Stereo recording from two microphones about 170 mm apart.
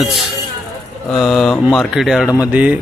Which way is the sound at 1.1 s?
Centre (ahead or behind).